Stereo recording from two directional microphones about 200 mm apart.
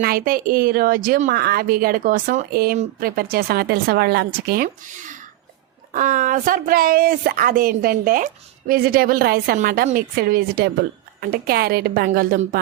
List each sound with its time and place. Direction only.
0.0 s speech: 45° right (ahead or behind)